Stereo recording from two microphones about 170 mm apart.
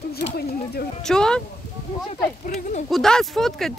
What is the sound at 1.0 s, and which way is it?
Speech, 5° left (ahead or behind).